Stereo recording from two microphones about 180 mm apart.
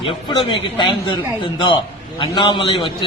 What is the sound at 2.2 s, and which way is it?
Speech, 25° left (ahead or behind).